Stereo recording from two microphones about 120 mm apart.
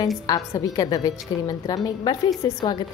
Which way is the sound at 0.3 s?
30° left (ahead or behind).